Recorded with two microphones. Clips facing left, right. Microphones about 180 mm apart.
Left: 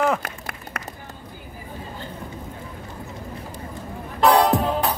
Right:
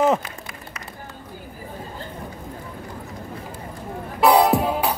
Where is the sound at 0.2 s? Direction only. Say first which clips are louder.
Left 2 dB; 60° left (ahead or behind).